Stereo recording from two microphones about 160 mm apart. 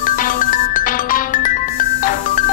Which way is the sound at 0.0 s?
55° left (ahead or behind).